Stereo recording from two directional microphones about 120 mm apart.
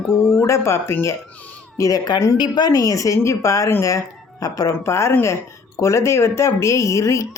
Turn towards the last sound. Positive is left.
turn(degrees=25)  # may be behind; listen again after turning